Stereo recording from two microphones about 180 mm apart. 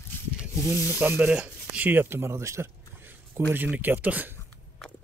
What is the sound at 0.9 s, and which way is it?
Speech, 10° right (ahead or behind).